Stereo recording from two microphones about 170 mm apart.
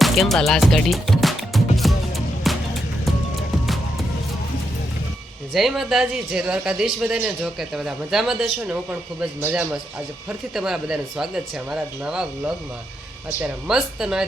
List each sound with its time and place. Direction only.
0.0 s music: centre (ahead or behind)
5.5 s speech: centre (ahead or behind)
13.4 s speech: 5° right (ahead or behind)